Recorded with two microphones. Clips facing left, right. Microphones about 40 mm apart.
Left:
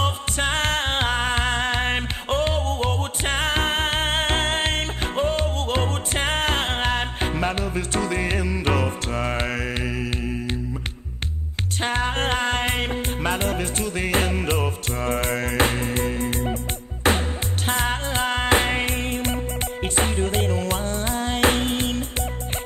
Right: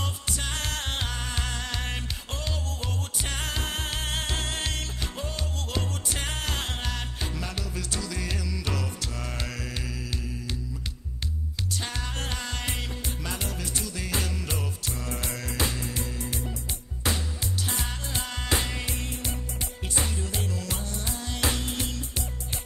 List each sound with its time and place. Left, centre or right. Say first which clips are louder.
0.0 s music: left 10 dB; left
11.8 s music: left 15 dB; left